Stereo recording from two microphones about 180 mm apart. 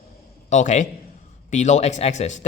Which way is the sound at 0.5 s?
40° left (ahead or behind).